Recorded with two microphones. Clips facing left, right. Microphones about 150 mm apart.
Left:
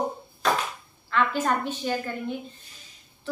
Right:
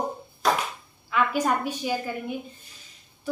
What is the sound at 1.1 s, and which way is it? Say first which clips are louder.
A woman's voice: right 1 dB; 10° right (ahead or behind).